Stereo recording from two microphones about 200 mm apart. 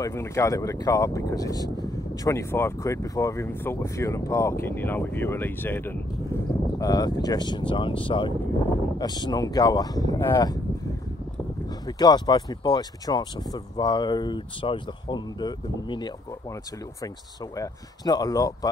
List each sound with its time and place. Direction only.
0.0 s speech: 15° left (ahead or behind)
11.8 s speech: 20° left (ahead or behind)
17.6 s speech: 20° left (ahead or behind)